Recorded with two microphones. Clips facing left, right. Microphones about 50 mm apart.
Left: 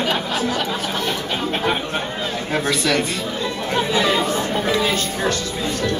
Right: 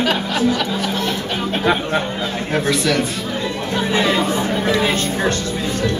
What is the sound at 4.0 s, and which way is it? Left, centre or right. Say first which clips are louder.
Chatter: right 2 dB; centre.